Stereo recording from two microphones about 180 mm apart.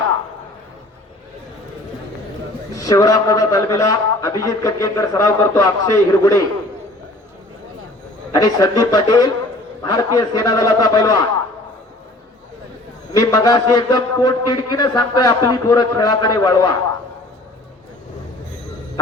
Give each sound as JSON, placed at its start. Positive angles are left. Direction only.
{"t": 2.7, "sound": "a man's voice", "side_deg": 20}
{"t": 8.3, "sound": "a man's voice", "side_deg": 20}
{"t": 13.1, "sound": "a man's voice", "side_deg": 20}